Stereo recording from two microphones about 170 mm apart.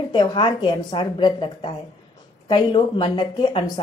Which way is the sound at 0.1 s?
25° left (ahead or behind).